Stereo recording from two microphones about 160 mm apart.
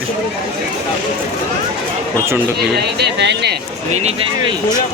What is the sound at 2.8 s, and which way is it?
Speech, 90° right.